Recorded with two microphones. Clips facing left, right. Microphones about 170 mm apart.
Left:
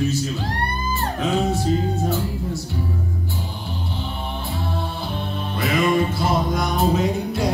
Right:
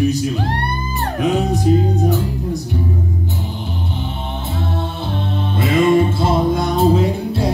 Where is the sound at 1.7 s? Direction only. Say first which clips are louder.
Right 10 dB; 15° right (ahead or behind).